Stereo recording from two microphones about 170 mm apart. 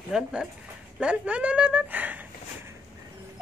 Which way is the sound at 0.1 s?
5° right (ahead or behind).